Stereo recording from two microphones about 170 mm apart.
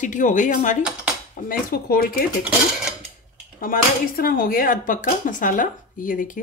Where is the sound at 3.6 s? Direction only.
55° left (ahead or behind).